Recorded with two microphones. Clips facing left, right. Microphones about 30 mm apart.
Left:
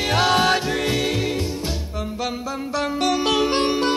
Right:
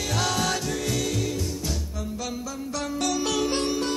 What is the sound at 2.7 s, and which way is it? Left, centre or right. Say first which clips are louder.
Music: left 6 dB; left.